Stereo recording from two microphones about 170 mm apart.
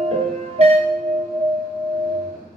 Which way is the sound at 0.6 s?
40° right (ahead or behind).